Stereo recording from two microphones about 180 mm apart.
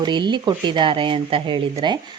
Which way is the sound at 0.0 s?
25° right (ahead or behind).